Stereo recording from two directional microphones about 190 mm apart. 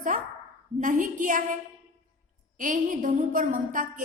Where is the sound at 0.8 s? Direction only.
45° right (ahead or behind).